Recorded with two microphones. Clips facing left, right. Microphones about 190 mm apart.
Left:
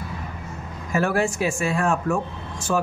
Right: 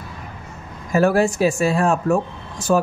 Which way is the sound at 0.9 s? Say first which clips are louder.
Right 5 dB; 35° right (ahead or behind).